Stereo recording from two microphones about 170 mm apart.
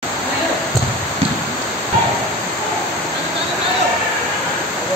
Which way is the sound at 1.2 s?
35° right (ahead or behind).